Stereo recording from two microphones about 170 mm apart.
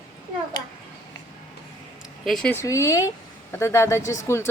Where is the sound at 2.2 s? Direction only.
5° left (ahead or behind).